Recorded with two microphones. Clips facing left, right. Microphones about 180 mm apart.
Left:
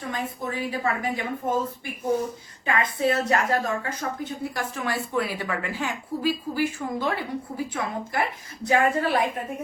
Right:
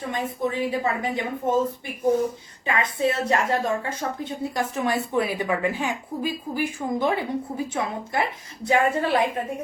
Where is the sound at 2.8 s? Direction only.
25° right (ahead or behind).